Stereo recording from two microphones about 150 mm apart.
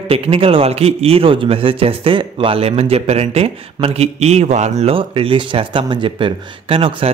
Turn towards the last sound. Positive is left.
turn(degrees=-40)  # may be behind; listen again after turning